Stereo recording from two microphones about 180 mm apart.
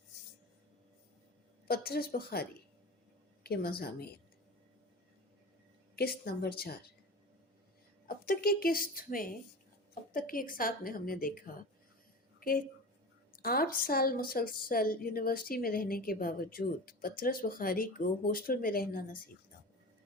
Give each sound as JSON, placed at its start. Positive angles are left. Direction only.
{"t": 1.6, "sound": "a woman's voice", "side_deg": 60}
{"t": 6.0, "sound": "a woman's voice", "side_deg": 60}
{"t": 8.0, "sound": "a woman's voice", "side_deg": 55}